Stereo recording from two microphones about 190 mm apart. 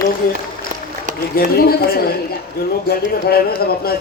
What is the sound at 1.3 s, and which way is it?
A man's voice, 55° left (ahead or behind).